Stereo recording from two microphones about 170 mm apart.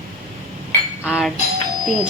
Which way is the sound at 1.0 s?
5° right (ahead or behind).